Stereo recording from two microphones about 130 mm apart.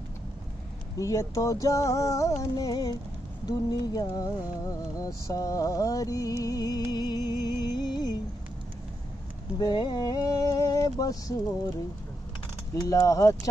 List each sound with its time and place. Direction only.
0.9 s music: 25° left (ahead or behind)
9.6 s music: 35° left (ahead or behind)
12.8 s music: 25° left (ahead or behind)